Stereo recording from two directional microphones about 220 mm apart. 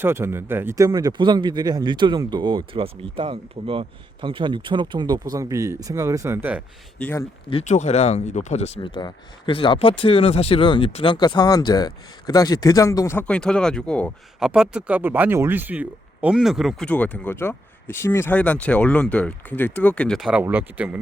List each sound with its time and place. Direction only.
0.0 s speech: 10° right (ahead or behind)
7.0 s speech: 10° left (ahead or behind)
7.5 s speech: 35° left (ahead or behind); by 21.0 s 5° right (ahead or behind)